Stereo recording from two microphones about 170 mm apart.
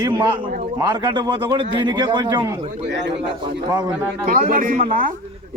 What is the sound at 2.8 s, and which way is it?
Speech, 90° right.